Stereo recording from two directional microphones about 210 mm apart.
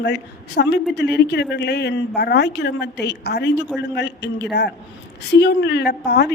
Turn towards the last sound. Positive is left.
turn(degrees=50)  # may be behind; listen again after turning